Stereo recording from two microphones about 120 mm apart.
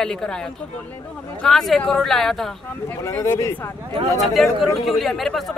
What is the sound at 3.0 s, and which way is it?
Speech, 25° left (ahead or behind).